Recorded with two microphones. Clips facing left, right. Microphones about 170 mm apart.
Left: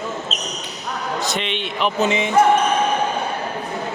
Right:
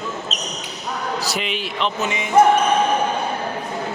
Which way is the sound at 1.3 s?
5° right (ahead or behind).